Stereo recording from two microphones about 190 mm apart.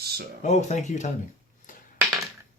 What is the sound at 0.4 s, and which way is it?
Speech, 35° left (ahead or behind).